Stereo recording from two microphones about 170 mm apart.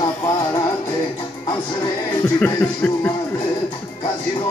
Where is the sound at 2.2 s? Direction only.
10° left (ahead or behind).